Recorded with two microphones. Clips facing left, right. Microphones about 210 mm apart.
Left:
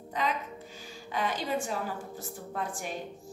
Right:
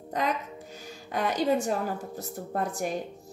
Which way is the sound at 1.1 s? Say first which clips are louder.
Right 6 dB; 40° right (ahead or behind).